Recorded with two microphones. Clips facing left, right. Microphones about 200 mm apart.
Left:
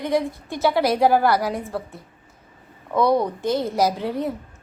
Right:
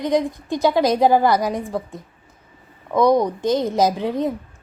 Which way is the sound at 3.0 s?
15° right (ahead or behind).